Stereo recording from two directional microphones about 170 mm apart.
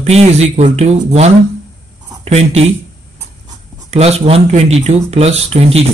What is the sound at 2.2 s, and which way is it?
Speech, 40° right (ahead or behind).